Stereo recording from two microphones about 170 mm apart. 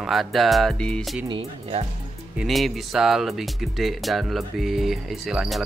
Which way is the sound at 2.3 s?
Centre (ahead or behind).